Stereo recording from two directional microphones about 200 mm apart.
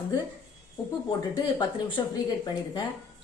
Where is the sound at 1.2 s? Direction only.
25° left (ahead or behind).